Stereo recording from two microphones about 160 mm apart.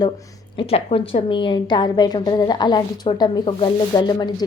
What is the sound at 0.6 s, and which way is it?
A woman's voice, 35° left (ahead or behind).